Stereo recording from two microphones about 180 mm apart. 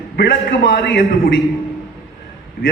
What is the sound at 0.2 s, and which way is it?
A man's voice, 75° left (ahead or behind).